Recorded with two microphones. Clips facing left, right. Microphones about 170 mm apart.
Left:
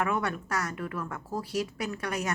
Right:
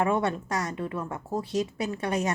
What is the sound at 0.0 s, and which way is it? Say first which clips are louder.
Speech: right 4 dB; 25° right (ahead or behind).